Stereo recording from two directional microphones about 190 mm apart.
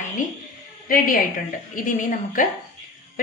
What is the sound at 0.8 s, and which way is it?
A woman's voice, 50° left (ahead or behind).